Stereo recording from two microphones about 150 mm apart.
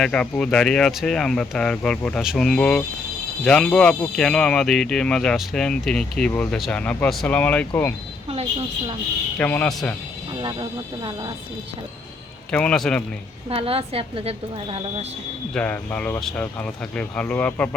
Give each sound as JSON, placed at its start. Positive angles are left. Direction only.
{"t": 0.0, "sound": "speech", "side_deg": 5}
{"t": 9.4, "sound": "speech", "side_deg": 10}
{"t": 10.4, "sound": "a woman's voice", "side_deg": -35}
{"t": 12.5, "sound": "speech", "side_deg": 5}
{"t": 13.5, "sound": "a woman's voice", "side_deg": -40}
{"t": 15.5, "sound": "speech", "side_deg": 10}